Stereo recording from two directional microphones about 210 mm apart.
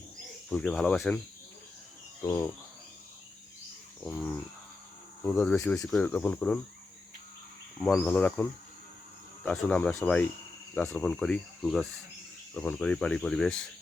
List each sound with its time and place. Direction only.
0.5 s cricket: centre (ahead or behind)
2.2 s speech: 15° left (ahead or behind)
4.0 s cricket: 5° left (ahead or behind)
5.2 s speech: 10° left (ahead or behind)
7.8 s speech: 10° left (ahead or behind)
10.8 s cricket: 10° left (ahead or behind)